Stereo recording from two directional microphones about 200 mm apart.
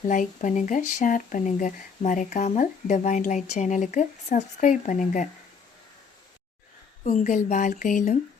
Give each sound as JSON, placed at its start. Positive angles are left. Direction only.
{"t": 0.1, "sound": "speech", "side_deg": 40}
{"t": 7.0, "sound": "speech", "side_deg": 35}